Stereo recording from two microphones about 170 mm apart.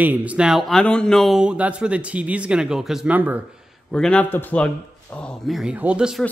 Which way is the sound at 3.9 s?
5° left (ahead or behind).